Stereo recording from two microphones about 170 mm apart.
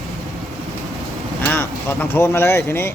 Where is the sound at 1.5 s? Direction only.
10° left (ahead or behind).